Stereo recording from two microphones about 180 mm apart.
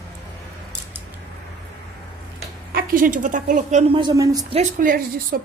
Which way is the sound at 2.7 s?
55° right (ahead or behind).